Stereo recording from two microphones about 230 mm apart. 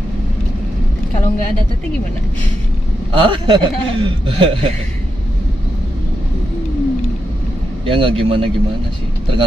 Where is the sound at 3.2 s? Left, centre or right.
Right.